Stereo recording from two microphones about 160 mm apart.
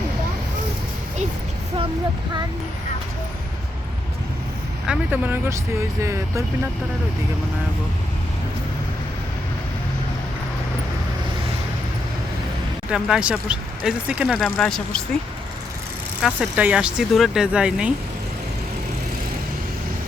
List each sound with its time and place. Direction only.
4.9 s speech: 10° right (ahead or behind)
12.9 s speech: 5° right (ahead or behind)
16.2 s speech: 5° right (ahead or behind)